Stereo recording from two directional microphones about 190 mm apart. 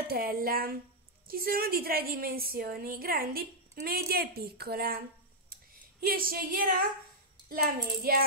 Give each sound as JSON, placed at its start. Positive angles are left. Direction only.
{"t": 0.1, "sound": "a woman's voice", "side_deg": -50}